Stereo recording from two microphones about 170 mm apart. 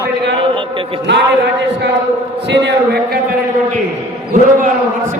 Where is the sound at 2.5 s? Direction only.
80° right.